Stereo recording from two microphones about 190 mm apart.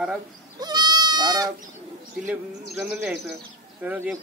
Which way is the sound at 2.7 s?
5° right (ahead or behind).